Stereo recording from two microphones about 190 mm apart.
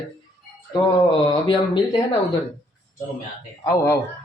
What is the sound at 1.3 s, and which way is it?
Speech, 25° left (ahead or behind).